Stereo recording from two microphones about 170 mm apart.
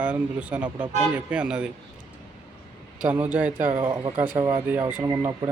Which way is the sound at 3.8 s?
25° right (ahead or behind).